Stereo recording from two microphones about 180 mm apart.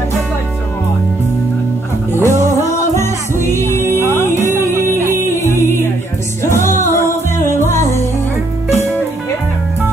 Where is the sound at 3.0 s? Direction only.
15° left (ahead or behind).